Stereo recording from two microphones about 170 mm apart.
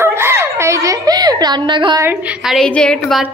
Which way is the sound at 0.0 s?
15° right (ahead or behind).